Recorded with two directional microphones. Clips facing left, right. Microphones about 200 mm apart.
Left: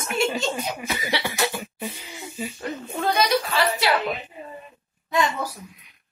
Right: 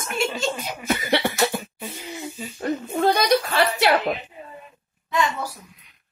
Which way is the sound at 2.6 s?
45° right (ahead or behind).